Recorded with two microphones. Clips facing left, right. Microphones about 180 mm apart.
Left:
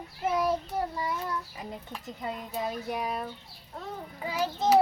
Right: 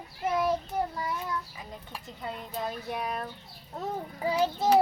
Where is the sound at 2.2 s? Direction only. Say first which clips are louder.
Left 1 dB; 10° left (ahead or behind).